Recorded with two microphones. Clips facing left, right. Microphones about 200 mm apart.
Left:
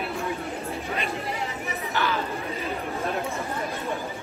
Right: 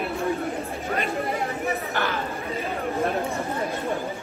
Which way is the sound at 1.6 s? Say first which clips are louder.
Left 1 dB; 50° right (ahead or behind).